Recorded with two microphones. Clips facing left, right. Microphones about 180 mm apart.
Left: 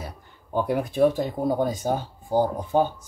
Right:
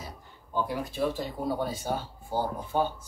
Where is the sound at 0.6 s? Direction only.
55° left (ahead or behind).